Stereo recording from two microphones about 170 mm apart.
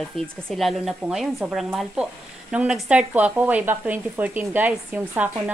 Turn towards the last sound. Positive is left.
turn(degrees=-10)  # may be behind; listen again after turning